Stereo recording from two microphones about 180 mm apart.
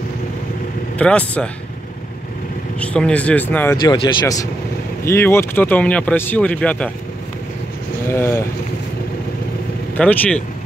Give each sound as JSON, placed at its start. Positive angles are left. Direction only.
{"t": 0.9, "sound": "speech", "side_deg": 5}
{"t": 2.8, "sound": "speech", "side_deg": 5}
{"t": 3.7, "sound": "speech", "side_deg": 25}
{"t": 8.1, "sound": "speech", "side_deg": 15}
{"t": 9.9, "sound": "speech", "side_deg": 10}